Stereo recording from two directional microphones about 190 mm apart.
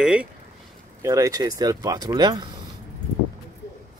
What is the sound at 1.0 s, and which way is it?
Speech, 15° right (ahead or behind).